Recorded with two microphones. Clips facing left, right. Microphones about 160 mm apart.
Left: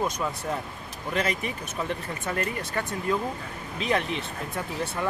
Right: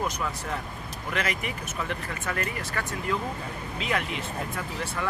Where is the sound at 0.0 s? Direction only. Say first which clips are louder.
Left 2 dB; 25° left (ahead or behind).